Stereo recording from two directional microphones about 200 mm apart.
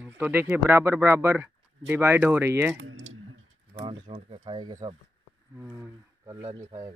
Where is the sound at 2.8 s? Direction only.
75° right (ahead or behind).